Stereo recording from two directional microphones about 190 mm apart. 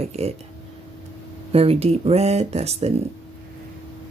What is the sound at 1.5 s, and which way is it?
Speech, 30° right (ahead or behind).